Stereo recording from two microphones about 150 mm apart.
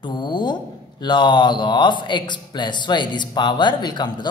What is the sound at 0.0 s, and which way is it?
A man's voice, 30° left (ahead or behind).